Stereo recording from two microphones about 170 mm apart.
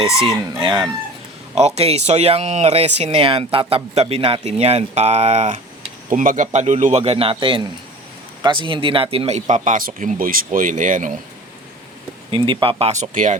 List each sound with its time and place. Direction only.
0.6 s speech: 25° right (ahead or behind)
1.5 s speech: 40° right (ahead or behind)
12.3 s speech: 30° right (ahead or behind); by 13.4 s 45° right (ahead or behind)